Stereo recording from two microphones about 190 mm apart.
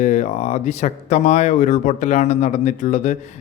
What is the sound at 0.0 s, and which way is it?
Speech, 40° left (ahead or behind).